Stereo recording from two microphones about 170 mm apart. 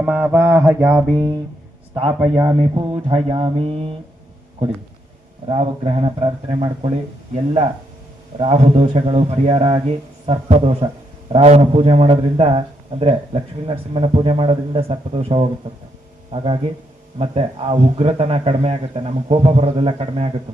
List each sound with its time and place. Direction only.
0.0 s mantra: 10° right (ahead or behind)
1.1 s a man's voice: 25° right (ahead or behind)
5.5 s a man's voice: 35° right (ahead or behind)
8.4 s a man's voice: 40° right (ahead or behind)